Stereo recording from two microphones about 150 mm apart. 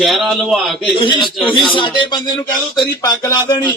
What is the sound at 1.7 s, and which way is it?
A man's voice, 30° left (ahead or behind).